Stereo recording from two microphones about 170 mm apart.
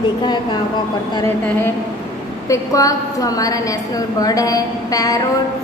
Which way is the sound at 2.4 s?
20° left (ahead or behind).